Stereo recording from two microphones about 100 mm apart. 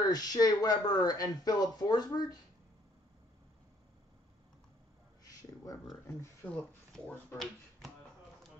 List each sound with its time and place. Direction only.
0.1 s speech: 40° left (ahead or behind)
6.4 s speech: 15° left (ahead or behind)